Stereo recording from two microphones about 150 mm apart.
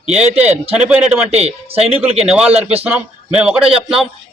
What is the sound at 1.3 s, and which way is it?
Speech, 45° right (ahead or behind).